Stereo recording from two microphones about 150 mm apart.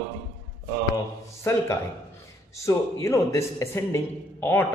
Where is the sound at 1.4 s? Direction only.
20° left (ahead or behind).